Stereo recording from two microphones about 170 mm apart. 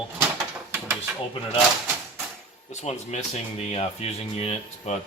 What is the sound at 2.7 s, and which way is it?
Speech, 40° left (ahead or behind).